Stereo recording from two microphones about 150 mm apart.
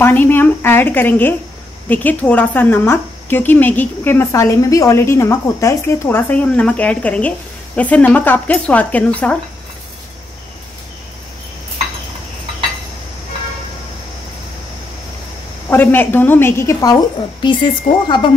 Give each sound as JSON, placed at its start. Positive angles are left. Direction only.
{"t": 0.0, "sound": "a woman's voice", "side_deg": 10}
{"t": 15.7, "sound": "a woman's voice", "side_deg": 15}